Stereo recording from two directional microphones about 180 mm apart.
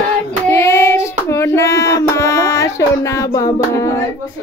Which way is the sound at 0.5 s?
15° left (ahead or behind).